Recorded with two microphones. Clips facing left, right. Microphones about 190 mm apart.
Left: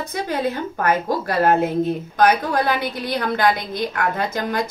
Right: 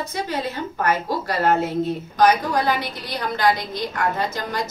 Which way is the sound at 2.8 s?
55° left (ahead or behind).